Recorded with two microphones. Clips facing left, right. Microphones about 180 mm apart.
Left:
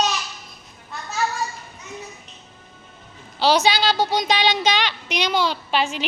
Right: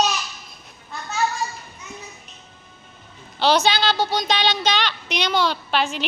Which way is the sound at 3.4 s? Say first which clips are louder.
Left 1 dB; 10° left (ahead or behind).